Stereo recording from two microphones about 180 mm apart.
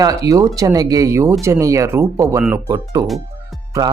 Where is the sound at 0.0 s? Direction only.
20° right (ahead or behind).